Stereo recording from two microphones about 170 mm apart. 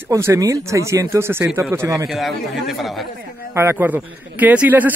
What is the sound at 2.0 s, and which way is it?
A man's voice, centre (ahead or behind).